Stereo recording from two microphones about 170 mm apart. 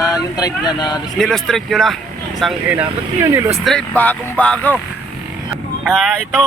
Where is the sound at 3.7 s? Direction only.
5° left (ahead or behind).